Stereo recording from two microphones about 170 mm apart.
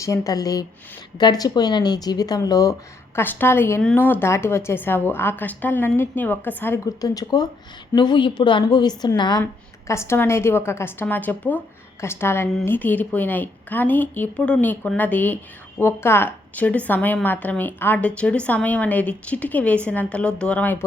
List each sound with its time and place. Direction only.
0.0 s a woman's voice: 20° left (ahead or behind)